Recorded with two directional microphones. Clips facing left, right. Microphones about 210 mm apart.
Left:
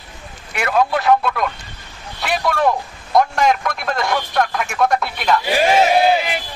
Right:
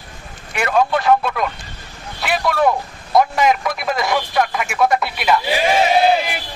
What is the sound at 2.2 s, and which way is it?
Vehicle, centre (ahead or behind).